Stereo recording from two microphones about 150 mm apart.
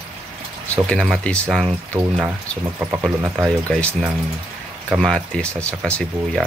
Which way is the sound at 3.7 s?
5° left (ahead or behind).